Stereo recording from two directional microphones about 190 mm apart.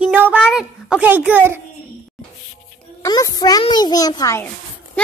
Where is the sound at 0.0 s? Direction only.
10° right (ahead or behind).